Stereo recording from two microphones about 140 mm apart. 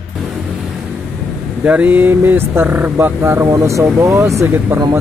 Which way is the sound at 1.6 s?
10° right (ahead or behind).